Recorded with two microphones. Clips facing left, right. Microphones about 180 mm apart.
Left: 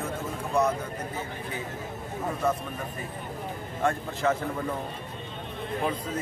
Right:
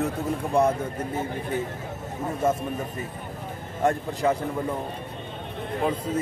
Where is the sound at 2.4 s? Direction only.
25° right (ahead or behind).